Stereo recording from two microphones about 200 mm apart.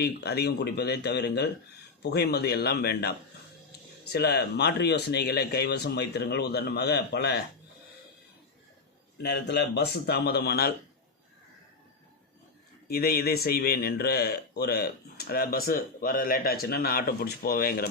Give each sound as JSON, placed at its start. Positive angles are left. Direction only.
{"t": 0.0, "sound": "a man's voice", "side_deg": 55}
{"t": 9.1, "sound": "a man's voice", "side_deg": 55}
{"t": 12.9, "sound": "a man's voice", "side_deg": 50}